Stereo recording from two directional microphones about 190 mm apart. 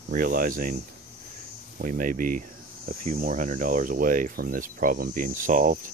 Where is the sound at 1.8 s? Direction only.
45° right (ahead or behind).